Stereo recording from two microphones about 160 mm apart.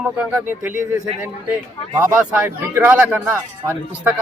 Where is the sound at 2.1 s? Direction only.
10° right (ahead or behind).